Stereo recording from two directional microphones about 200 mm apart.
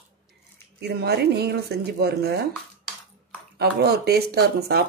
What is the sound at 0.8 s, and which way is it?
Speech, 55° right (ahead or behind).